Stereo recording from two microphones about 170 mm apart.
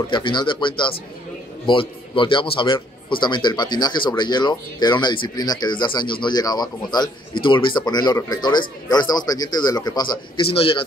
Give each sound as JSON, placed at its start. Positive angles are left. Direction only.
{"t": 0.1, "sound": "speech", "side_deg": 25}